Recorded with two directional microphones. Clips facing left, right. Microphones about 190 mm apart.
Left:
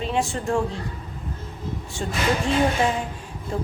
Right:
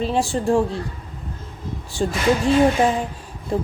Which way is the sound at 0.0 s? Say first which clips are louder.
Right 4 dB; 35° right (ahead or behind).